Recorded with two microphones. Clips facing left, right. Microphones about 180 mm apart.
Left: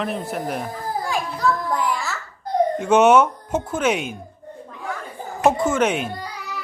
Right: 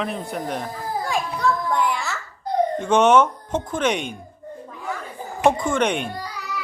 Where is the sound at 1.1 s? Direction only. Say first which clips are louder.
Even; centre (ahead or behind).